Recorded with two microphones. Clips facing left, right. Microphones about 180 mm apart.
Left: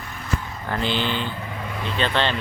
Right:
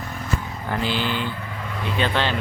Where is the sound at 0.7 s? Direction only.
5° right (ahead or behind).